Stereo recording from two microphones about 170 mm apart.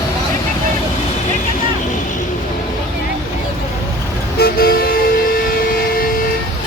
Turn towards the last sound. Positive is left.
turn(degrees=60)  # may be behind; listen again after turning